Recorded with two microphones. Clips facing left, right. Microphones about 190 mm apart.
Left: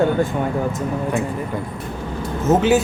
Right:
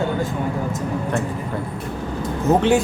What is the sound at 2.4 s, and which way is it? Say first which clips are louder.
Speech: left 1 dB; 5° left (ahead or behind).